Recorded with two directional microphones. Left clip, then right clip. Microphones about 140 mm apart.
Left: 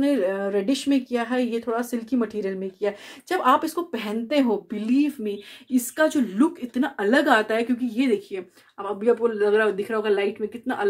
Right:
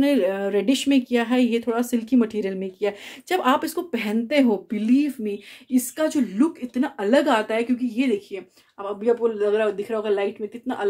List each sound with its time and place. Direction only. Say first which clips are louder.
0.0 s speech: right 2 dB; 35° right (ahead or behind)
5.2 s a woman's voice: right 1 dB; 15° right (ahead or behind)